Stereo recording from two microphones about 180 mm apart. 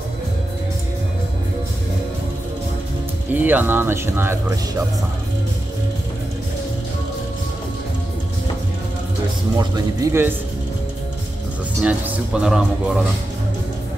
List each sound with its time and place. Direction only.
3.3 s speech: 10° right (ahead or behind)
9.6 s speech: 20° right (ahead or behind)
11.8 s speech: 10° right (ahead or behind)